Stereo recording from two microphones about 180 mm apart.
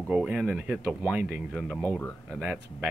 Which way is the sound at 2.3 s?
5° right (ahead or behind).